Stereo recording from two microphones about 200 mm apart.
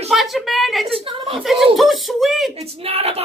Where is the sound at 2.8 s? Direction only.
30° right (ahead or behind).